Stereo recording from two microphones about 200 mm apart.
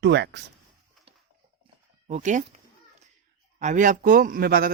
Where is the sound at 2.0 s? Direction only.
40° right (ahead or behind).